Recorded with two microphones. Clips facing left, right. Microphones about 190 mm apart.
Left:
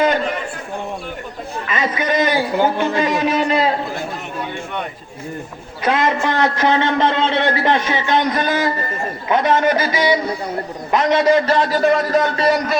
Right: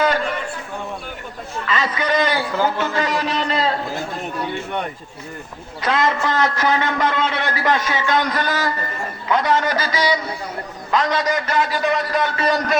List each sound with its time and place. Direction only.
1.6 s a man's voice: 20° left (ahead or behind)
3.3 s a sound: 10° left (ahead or behind)
5.8 s a man's voice: 25° left (ahead or behind); by 12.5 s 45° left (ahead or behind)